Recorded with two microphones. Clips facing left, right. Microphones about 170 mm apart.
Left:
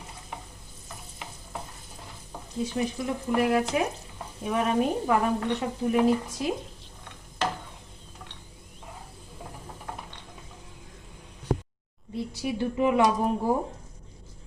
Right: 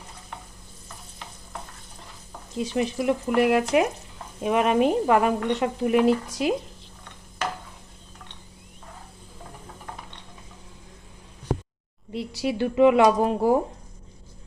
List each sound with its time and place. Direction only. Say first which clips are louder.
2.7 s speech: right 7 dB; 85° right
12.1 s speech: right 3 dB; 80° right